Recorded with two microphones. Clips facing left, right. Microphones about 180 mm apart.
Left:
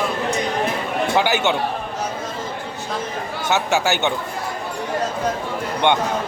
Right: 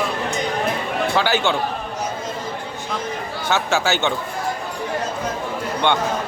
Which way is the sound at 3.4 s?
15° left (ahead or behind).